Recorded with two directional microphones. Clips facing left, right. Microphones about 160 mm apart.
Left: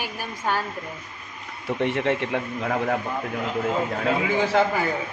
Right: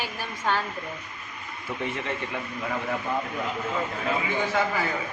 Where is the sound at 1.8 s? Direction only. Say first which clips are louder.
Left 8 dB; 70° left (ahead or behind); by 3.0 s 55° left (ahead or behind).